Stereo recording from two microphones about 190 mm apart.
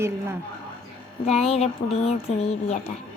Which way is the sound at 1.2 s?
35° left (ahead or behind).